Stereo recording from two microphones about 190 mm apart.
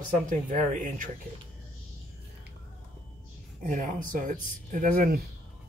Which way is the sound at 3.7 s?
45° right (ahead or behind).